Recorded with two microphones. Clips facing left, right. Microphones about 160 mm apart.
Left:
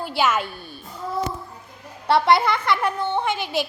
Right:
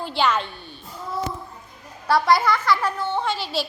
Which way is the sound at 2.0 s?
25° left (ahead or behind).